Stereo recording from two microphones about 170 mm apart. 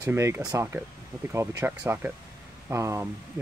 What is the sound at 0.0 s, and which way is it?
Speech, 15° right (ahead or behind).